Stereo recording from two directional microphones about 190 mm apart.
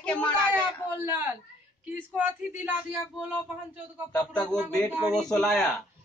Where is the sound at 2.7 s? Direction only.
10° right (ahead or behind).